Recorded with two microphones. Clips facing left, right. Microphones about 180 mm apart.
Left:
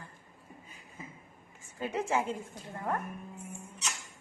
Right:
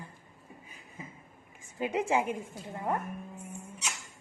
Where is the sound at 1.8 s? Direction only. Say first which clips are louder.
Right 3 dB; 15° right (ahead or behind).